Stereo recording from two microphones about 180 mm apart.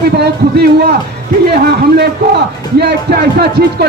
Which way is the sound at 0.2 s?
65° right (ahead or behind).